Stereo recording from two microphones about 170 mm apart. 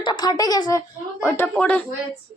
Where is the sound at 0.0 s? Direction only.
25° left (ahead or behind); by 1.8 s 10° left (ahead or behind).